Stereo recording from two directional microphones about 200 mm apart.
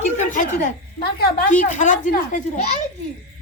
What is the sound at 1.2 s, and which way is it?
Speech, 45° left (ahead or behind).